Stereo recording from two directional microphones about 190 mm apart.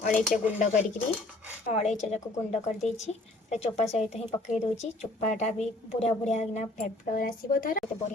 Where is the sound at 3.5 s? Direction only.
35° left (ahead or behind).